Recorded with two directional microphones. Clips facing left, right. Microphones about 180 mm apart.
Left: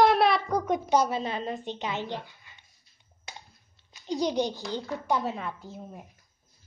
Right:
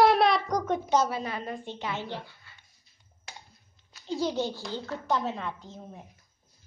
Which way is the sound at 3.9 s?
15° left (ahead or behind).